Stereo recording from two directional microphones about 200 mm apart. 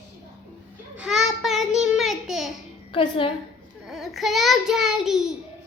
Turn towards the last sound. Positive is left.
turn(degrees=0)  # may be behind; listen again after turning